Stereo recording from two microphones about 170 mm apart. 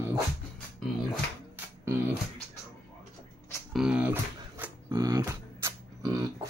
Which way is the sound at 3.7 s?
5° right (ahead or behind).